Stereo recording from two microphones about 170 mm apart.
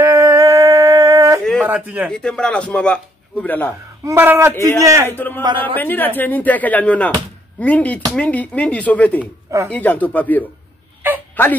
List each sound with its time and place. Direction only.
0.0 s a sound: 20° right (ahead or behind)
1.4 s a sound: 5° left (ahead or behind)
1.7 s a man's voice: 10° right (ahead or behind)
2.0 s speech: 5° left (ahead or behind)
4.0 s a man's voice: 15° right (ahead or behind)
5.0 s speech: 10° left (ahead or behind)
5.4 s a man's voice: 30° right (ahead or behind)
5.8 s speech: 10° left (ahead or behind)